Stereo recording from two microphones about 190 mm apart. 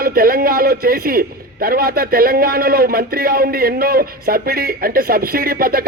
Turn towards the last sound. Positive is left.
turn(degrees=-50)  # may be behind; listen again after turning